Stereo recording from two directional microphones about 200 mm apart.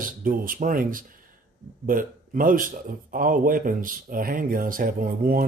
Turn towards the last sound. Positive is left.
turn(degrees=-45)  # may be behind; listen again after turning